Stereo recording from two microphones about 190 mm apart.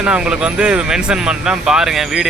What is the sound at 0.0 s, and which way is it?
Speech, 5° right (ahead or behind).